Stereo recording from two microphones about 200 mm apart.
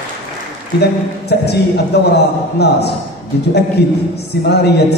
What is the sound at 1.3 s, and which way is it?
A man's voice, 55° left (ahead or behind).